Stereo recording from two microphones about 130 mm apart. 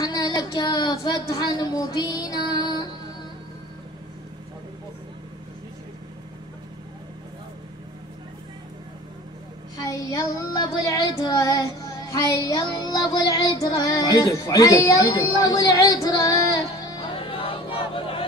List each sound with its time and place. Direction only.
0.0 s child singing: 30° left (ahead or behind)
9.8 s child singing: 30° left (ahead or behind)
17.3 s a sound: 45° left (ahead or behind)